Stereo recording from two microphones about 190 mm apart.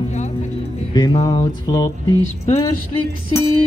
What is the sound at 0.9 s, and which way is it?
Music, 20° left (ahead or behind).